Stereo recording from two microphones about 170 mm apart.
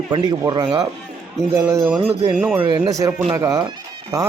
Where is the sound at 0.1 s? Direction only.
25° right (ahead or behind).